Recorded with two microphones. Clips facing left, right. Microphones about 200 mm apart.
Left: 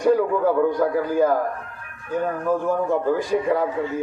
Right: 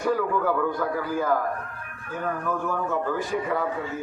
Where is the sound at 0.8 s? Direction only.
35° left (ahead or behind).